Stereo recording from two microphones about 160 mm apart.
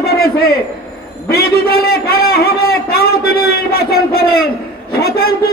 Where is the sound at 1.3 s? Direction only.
75° left (ahead or behind).